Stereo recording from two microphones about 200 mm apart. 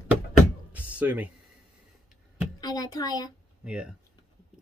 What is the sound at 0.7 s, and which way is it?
Music, 10° right (ahead or behind).